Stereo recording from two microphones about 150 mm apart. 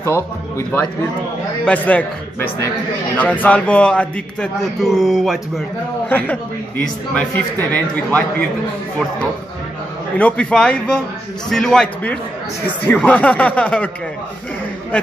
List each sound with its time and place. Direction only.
0.0 s a man's voice: 20° left (ahead or behind)
3.2 s a man's voice: 10° left (ahead or behind)
6.0 s a man's voice: 10° left (ahead or behind)
10.1 s a man's voice: 10° left (ahead or behind)